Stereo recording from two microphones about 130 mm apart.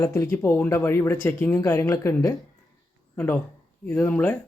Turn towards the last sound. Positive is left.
turn(degrees=15)  # may be behind; listen again after turning